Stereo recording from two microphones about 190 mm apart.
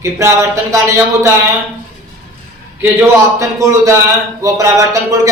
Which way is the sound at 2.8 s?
15° right (ahead or behind).